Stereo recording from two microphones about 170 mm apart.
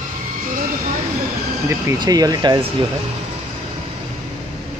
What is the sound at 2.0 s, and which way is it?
Speech, 20° right (ahead or behind).